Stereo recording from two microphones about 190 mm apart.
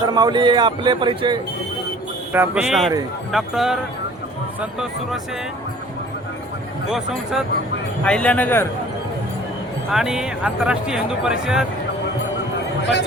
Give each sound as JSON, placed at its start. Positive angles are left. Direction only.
{"t": 0.0, "sound": "speech", "side_deg": -20}
{"t": 2.3, "sound": "speech", "side_deg": -10}
{"t": 6.9, "sound": "a man's voice", "side_deg": 0}
{"t": 9.9, "sound": "speech", "side_deg": -5}